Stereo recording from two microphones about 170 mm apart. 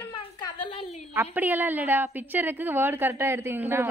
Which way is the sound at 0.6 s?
45° left (ahead or behind).